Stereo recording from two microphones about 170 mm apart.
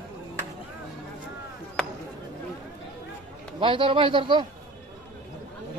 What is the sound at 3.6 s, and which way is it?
Speech, 30° right (ahead or behind).